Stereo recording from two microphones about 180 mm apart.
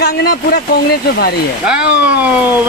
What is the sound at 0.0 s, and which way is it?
Speech, 60° left (ahead or behind).